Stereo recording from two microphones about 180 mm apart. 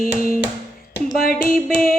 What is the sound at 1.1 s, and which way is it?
Mantra, 55° left (ahead or behind).